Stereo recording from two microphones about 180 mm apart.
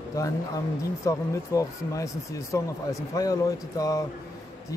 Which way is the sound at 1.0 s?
15° left (ahead or behind).